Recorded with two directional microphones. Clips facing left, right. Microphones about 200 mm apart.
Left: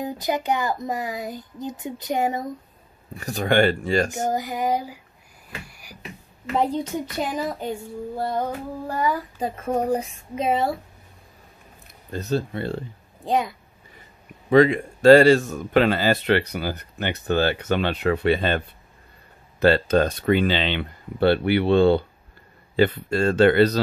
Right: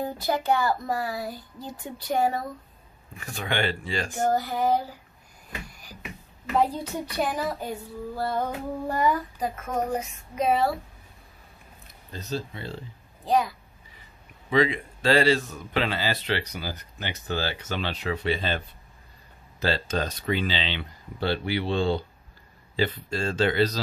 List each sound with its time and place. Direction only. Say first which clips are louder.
0.0 s speech: left 2 dB; 15° left (ahead or behind)
3.2 s speech: left 9 dB; 40° left (ahead or behind)
4.3 s speech: even; 15° left (ahead or behind)
5.7 s beatboxing: left 1 dB; 10° left (ahead or behind)
6.5 s a child's voice: left 2 dB; 20° left (ahead or behind)
8.8 s child singing: even; centre (ahead or behind)
9.4 s a child's voice: left 4 dB; 30° left (ahead or behind)
12.1 s speech: left 7 dB; 55° left (ahead or behind)
13.2 s a child's voice: left 1 dB; 25° left (ahead or behind)
14.5 s speech: left 7 dB; 50° left (ahead or behind)
19.6 s speech: left 9 dB; 60° left (ahead or behind)